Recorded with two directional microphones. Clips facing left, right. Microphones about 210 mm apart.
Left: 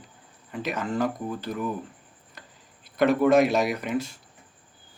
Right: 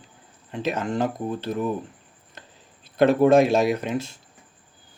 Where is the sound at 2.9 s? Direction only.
25° right (ahead or behind).